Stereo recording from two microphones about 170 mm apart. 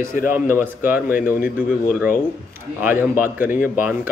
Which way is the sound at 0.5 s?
10° right (ahead or behind).